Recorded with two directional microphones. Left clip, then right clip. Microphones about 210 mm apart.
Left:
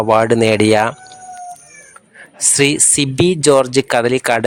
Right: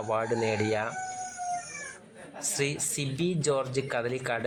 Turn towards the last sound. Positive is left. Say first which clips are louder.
# left 16 dB
turn(degrees=45)  # may be behind; listen again after turning